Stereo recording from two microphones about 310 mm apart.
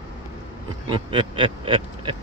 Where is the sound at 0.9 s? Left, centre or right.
Centre.